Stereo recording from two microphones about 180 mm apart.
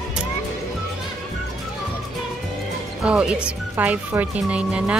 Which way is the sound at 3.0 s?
5° right (ahead or behind).